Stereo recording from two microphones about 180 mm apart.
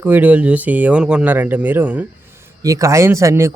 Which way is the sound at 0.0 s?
10° right (ahead or behind).